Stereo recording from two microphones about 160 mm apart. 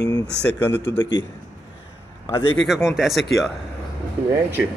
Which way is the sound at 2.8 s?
Centre (ahead or behind).